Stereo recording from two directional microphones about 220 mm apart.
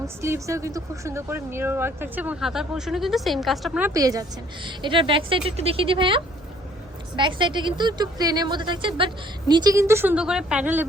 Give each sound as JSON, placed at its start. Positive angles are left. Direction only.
{"t": 0.0, "sound": "a woman's voice", "side_deg": -15}